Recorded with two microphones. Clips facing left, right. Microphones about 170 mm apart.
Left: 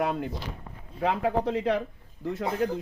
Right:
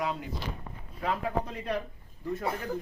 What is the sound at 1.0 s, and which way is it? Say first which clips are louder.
Speech: left 5 dB; 85° left.